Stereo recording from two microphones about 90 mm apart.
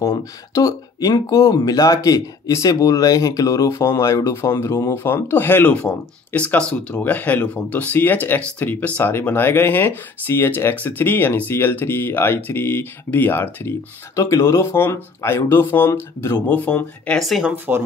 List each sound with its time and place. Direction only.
0.6 s speech: 40° left (ahead or behind)
4.9 s speech: 25° left (ahead or behind)
16.4 s speech: 15° left (ahead or behind)
17.2 s speech: 5° right (ahead or behind)